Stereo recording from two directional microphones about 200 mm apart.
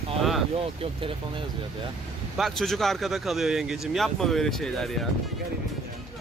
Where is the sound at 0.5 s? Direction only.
30° right (ahead or behind).